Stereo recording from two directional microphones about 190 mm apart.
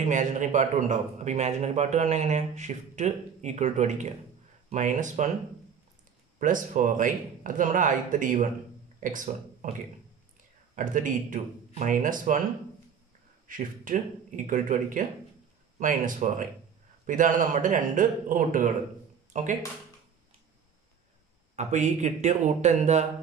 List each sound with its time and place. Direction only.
0.0 s a man's voice: 40° right (ahead or behind)
6.4 s speech: 45° right (ahead or behind)
10.8 s speech: 45° right (ahead or behind)
13.5 s a man's voice: 45° right (ahead or behind)
21.5 s a man's voice: 40° right (ahead or behind)